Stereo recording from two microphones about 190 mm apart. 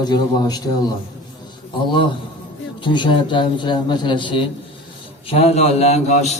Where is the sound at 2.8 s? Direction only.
25° left (ahead or behind).